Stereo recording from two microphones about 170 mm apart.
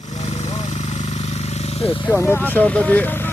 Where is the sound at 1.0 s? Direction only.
40° left (ahead or behind).